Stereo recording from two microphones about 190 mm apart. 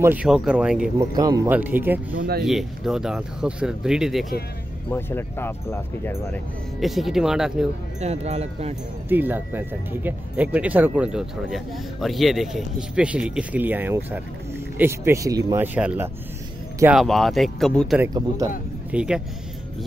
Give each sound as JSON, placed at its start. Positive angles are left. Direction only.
{"t": 0.0, "sound": "speech", "side_deg": -10}
{"t": 0.9, "sound": "speech", "side_deg": -20}
{"t": 2.1, "sound": "speech", "side_deg": -55}
{"t": 2.4, "sound": "speech", "side_deg": 0}
{"t": 4.8, "sound": "speech", "side_deg": 10}
{"t": 6.8, "sound": "speech", "side_deg": 0}
{"t": 8.0, "sound": "speech", "side_deg": -35}
{"t": 9.1, "sound": "speech", "side_deg": -10}
{"t": 18.0, "sound": "speech", "side_deg": -20}
{"t": 18.9, "sound": "speech", "side_deg": -5}